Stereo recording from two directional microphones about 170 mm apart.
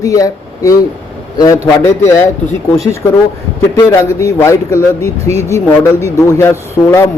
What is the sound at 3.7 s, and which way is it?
Speech, 15° left (ahead or behind).